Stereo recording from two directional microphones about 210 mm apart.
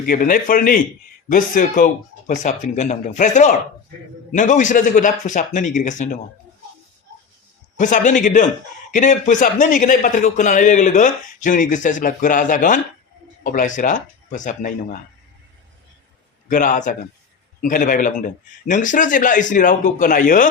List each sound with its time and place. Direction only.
0.0 s a man's voice: 40° left (ahead or behind)
7.8 s a man's voice: 35° left (ahead or behind)
16.5 s a man's voice: 40° left (ahead or behind)